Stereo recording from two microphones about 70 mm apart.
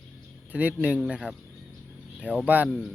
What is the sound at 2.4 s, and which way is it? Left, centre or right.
Speech, right.